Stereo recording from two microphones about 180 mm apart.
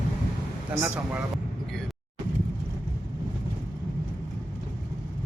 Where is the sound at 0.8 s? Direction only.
5° right (ahead or behind).